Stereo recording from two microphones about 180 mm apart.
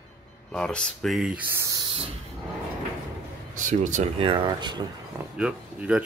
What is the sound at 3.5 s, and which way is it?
Speech, 45° right (ahead or behind).